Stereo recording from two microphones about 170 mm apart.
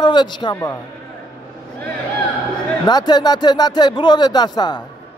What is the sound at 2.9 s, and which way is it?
A man's voice, 25° left (ahead or behind).